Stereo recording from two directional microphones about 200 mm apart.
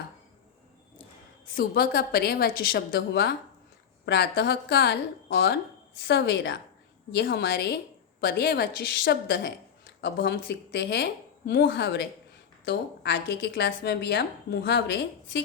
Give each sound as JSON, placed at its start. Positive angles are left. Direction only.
{"t": 1.5, "sound": "a woman's voice", "side_deg": 50}